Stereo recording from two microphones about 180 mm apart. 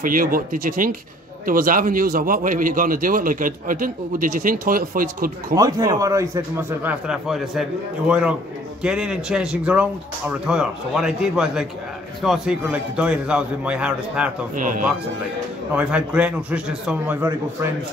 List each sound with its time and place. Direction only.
0.0 s a man's voice: 50° right (ahead or behind)
5.5 s a man's voice: 20° right (ahead or behind)
15.7 s a man's voice: 5° right (ahead or behind)